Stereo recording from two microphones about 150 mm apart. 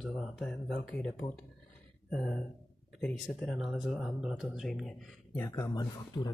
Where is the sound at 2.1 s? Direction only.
5° left (ahead or behind).